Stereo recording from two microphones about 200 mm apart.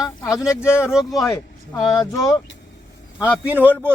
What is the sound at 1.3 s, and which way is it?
Speech, 15° left (ahead or behind).